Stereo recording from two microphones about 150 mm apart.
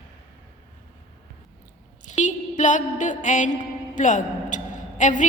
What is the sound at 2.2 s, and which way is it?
A woman's voice, 55° left (ahead or behind).